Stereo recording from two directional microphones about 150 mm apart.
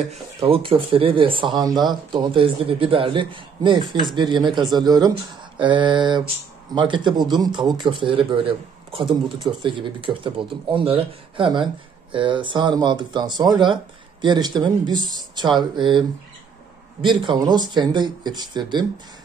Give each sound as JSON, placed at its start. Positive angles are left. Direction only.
{"t": 0.1, "sound": "a man's voice", "side_deg": -40}
{"t": 17.0, "sound": "speech", "side_deg": -35}